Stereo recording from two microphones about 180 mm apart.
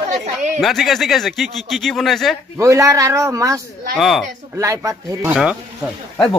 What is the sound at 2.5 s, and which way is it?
A man's voice, 15° right (ahead or behind).